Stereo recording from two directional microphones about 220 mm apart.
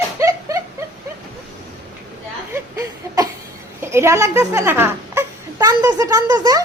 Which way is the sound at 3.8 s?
10° right (ahead or behind).